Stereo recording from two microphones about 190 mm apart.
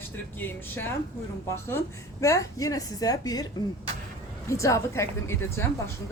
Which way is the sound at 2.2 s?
15° left (ahead or behind).